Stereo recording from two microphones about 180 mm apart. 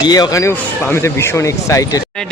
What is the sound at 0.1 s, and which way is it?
Speech, 20° left (ahead or behind).